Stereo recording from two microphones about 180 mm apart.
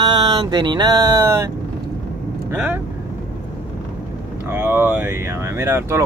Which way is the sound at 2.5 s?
10° right (ahead or behind).